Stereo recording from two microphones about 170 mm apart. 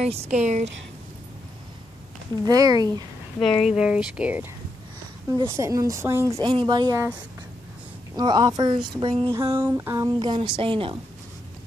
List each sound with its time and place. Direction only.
0.0 s speech: 40° right (ahead or behind)
2.4 s a woman's voice: 20° right (ahead or behind)
3.3 s speech: 5° left (ahead or behind)
5.4 s a woman's voice: 20° right (ahead or behind)
8.2 s a woman's voice: 25° right (ahead or behind)
9.3 s a woman's voice: 15° right (ahead or behind); by 11.0 s 30° right (ahead or behind)